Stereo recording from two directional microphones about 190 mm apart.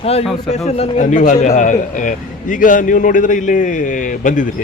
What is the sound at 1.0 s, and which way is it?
A man's voice, 40° left (ahead or behind).